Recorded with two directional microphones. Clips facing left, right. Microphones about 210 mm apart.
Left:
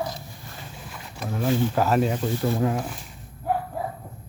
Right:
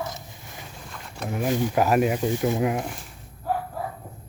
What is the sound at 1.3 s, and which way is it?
Speech, 15° right (ahead or behind).